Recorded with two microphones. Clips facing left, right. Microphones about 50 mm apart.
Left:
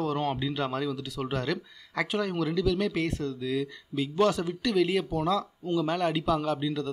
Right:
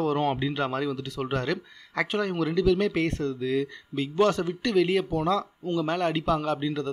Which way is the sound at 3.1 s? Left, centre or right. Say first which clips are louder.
Right 3 dB; right.